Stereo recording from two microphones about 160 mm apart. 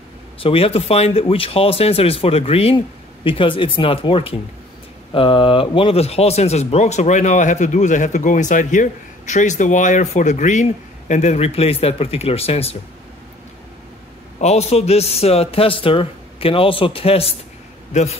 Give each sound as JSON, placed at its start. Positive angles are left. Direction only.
{"t": 0.4, "sound": "a man's voice", "side_deg": 35}
{"t": 14.4, "sound": "a man's voice", "side_deg": 40}